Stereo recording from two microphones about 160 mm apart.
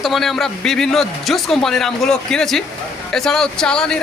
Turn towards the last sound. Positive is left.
turn(degrees=5)  # may be behind; listen again after turning